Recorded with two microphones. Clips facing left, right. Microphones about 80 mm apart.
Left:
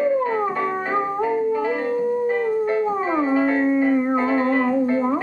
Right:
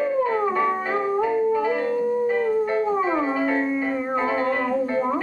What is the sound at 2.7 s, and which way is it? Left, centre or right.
Music, centre.